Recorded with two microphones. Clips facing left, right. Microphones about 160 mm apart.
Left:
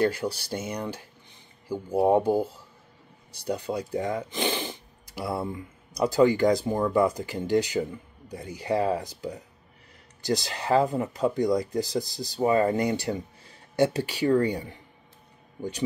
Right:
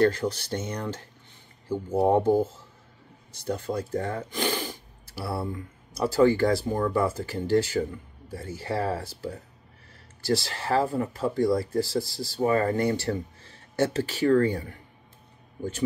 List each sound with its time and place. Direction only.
0.0 s speech: 10° left (ahead or behind)